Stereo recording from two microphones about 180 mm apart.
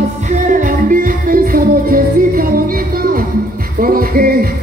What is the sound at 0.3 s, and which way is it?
Music, 45° right (ahead or behind).